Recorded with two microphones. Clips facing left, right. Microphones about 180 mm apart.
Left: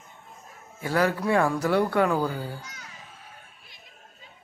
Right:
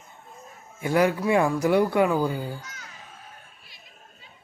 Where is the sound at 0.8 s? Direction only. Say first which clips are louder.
Right 3 dB; 15° right (ahead or behind).